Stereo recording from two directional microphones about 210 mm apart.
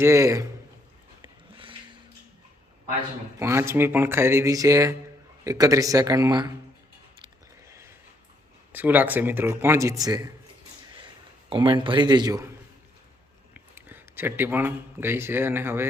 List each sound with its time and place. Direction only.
0.0 s speech: 15° right (ahead or behind)
3.3 s speech: 10° right (ahead or behind)
7.7 s a sound: 15° right (ahead or behind)
8.7 s speech: 10° right (ahead or behind)
11.4 s speech: 25° right (ahead or behind)
13.5 s a man's voice: 10° right (ahead or behind)